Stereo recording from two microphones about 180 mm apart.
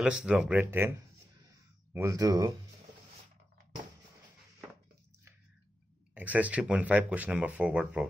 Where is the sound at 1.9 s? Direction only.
15° right (ahead or behind).